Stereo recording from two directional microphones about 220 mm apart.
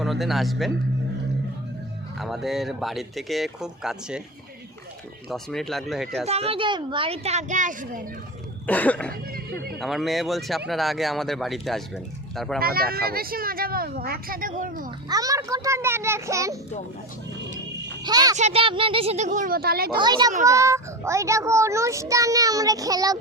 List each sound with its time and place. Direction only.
0.0 s speech: centre (ahead or behind)
2.1 s speech: centre (ahead or behind)
5.3 s speech: centre (ahead or behind)
6.2 s a child's voice: 25° right (ahead or behind)
8.6 s cough: 5° left (ahead or behind)
9.8 s speech: centre (ahead or behind)
12.5 s speech: 45° right (ahead or behind)
14.8 s a child's voice: 15° right (ahead or behind)
18.0 s speech: 15° right (ahead or behind)
18.3 s speech: 30° right (ahead or behind); by 20.0 s 45° right (ahead or behind)
20.0 s a child's voice: 20° right (ahead or behind)